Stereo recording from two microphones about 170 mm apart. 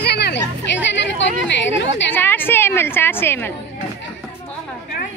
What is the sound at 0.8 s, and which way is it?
Speech, 90° left.